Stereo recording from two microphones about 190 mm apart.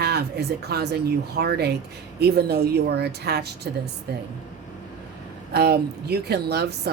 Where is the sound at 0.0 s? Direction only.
60° right (ahead or behind).